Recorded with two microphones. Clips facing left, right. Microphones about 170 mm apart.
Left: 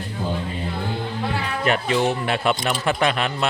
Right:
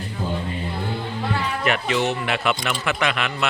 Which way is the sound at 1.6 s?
35° left (ahead or behind).